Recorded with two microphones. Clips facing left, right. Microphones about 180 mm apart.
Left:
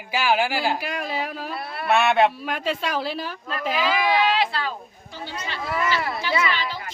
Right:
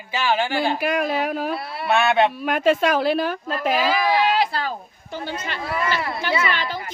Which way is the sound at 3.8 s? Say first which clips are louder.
Left 1 dB; 40° right (ahead or behind).